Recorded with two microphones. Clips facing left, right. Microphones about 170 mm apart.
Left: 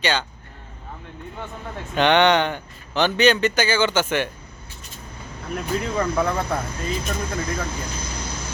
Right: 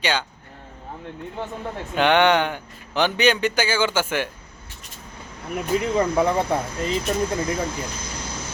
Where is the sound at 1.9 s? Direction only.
5° right (ahead or behind).